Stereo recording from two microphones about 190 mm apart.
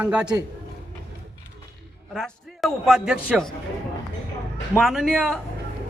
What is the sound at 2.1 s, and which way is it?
A man's voice, centre (ahead or behind).